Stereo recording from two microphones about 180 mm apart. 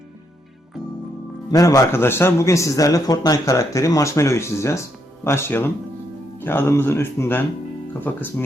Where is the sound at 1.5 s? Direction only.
20° left (ahead or behind).